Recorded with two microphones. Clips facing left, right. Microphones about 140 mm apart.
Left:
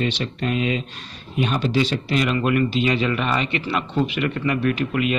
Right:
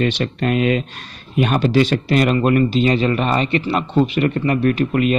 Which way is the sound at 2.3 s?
35° right (ahead or behind).